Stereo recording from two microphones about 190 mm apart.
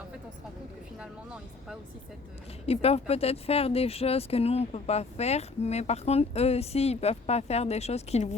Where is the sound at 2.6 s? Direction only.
30° left (ahead or behind).